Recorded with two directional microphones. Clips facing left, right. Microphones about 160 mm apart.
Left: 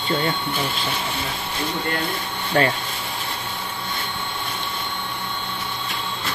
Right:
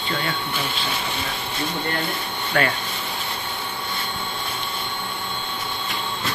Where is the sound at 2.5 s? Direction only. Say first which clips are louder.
Left 3 dB; 30° left (ahead or behind).